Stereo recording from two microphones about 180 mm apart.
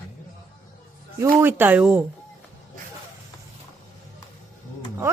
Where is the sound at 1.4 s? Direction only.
10° right (ahead or behind).